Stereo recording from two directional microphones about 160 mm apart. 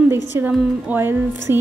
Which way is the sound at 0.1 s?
15° right (ahead or behind).